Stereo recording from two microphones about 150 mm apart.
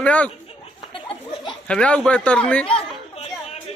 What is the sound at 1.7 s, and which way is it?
Speech, 5° left (ahead or behind).